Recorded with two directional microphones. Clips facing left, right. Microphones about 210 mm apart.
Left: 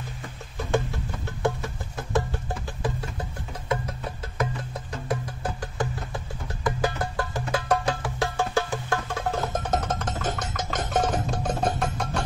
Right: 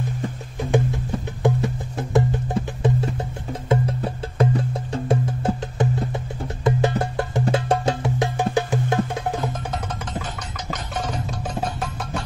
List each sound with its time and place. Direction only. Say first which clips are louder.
1.4 s music: right 5 dB; 20° right (ahead or behind)
9.5 s music: left 2 dB; 45° left (ahead or behind)
11.8 s music: even; centre (ahead or behind)